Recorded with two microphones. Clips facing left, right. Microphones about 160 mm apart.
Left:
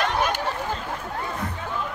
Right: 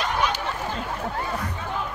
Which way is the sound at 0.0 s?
50° left (ahead or behind).